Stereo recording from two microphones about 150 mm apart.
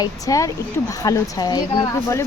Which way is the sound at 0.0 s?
20° left (ahead or behind).